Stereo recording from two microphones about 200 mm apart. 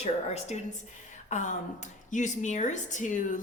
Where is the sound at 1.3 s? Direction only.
35° left (ahead or behind).